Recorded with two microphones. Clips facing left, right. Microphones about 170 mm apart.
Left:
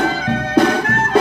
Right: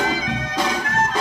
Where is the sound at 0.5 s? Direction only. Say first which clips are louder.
Left 9 dB; 60° left (ahead or behind).